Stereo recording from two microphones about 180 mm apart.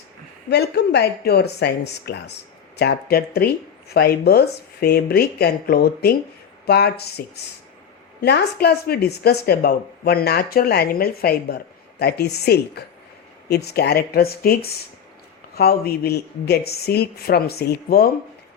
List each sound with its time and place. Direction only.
0.5 s speech: 65° left (ahead or behind)
8.2 s speech: 60° left (ahead or behind)